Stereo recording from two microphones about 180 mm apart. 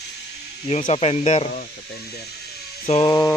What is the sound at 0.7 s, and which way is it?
Speech, 35° left (ahead or behind).